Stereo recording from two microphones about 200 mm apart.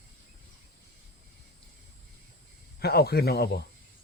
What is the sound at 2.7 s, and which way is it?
Speech, 50° left (ahead or behind).